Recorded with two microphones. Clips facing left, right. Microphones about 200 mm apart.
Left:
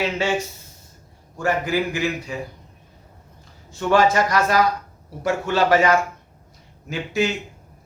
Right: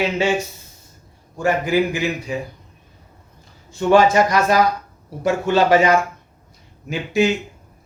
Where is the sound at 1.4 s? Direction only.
15° right (ahead or behind).